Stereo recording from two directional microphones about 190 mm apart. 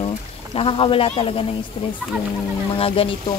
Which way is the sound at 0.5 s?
30° left (ahead or behind).